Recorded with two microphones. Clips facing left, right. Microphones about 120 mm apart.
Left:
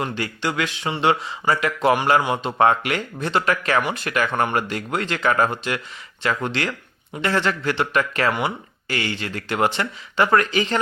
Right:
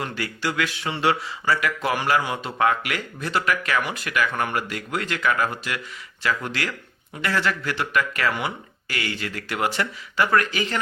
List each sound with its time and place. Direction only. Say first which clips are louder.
0.0 s speech: left 3 dB; 25° left (ahead or behind)